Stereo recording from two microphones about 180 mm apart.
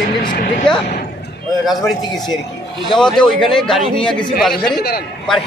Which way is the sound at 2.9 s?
5° left (ahead or behind).